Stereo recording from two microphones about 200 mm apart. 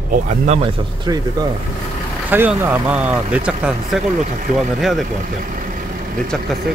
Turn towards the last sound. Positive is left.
turn(degrees=5)  # may be behind; listen again after turning